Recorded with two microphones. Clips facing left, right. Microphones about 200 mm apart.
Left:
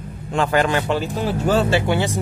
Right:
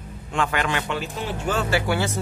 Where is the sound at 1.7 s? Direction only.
20° left (ahead or behind).